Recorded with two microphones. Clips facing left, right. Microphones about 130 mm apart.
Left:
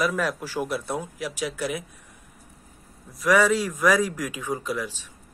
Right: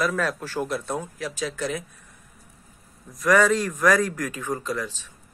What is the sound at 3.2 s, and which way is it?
Speech, 5° left (ahead or behind).